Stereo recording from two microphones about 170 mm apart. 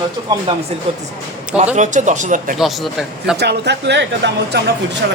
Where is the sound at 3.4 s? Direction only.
80° right.